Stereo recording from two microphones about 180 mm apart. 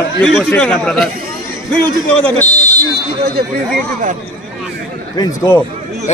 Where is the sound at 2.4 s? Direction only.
40° left (ahead or behind).